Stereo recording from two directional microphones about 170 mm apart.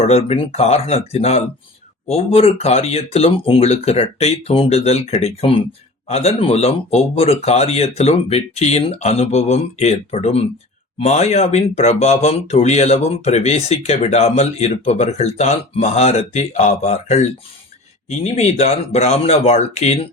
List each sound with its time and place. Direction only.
0.0 s speech: 35° left (ahead or behind)